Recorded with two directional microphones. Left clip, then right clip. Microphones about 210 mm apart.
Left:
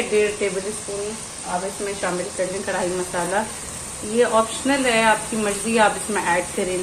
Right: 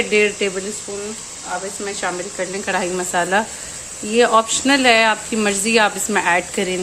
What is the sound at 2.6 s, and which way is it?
Speech, 55° right (ahead or behind).